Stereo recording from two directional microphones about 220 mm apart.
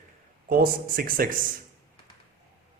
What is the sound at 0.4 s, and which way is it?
Speech, 40° right (ahead or behind).